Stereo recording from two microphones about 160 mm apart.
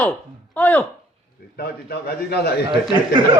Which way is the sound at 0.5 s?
10° left (ahead or behind).